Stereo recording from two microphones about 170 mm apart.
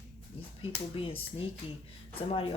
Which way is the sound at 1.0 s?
35° left (ahead or behind).